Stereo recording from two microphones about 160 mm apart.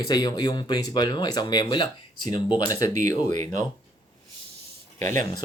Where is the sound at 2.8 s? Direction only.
50° right (ahead or behind).